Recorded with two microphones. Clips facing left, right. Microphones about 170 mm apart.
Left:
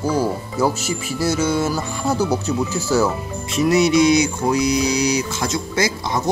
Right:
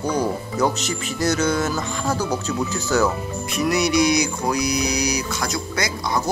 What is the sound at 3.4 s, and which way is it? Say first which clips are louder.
Speech: left 5 dB; 25° left (ahead or behind).